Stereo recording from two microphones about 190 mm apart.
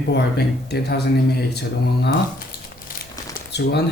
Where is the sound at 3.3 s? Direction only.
60° left (ahead or behind).